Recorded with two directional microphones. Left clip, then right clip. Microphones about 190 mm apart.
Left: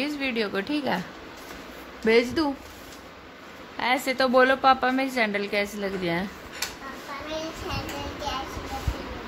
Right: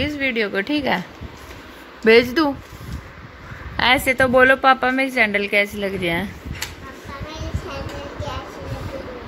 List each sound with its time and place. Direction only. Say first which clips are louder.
0.0 s a woman's voice: right 6 dB; 10° right (ahead or behind)
2.0 s a woman's voice: right 8 dB; 15° right (ahead or behind)
3.7 s a woman's voice: right 8 dB; 20° right (ahead or behind)